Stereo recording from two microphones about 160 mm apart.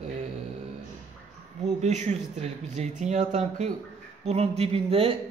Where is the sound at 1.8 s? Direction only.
45° right (ahead or behind).